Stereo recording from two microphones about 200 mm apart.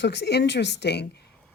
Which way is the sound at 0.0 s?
60° left (ahead or behind).